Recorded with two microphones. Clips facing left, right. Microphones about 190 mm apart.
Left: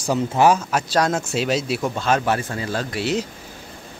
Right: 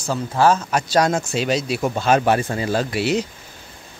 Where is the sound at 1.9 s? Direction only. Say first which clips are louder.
Right 5 dB; 15° right (ahead or behind).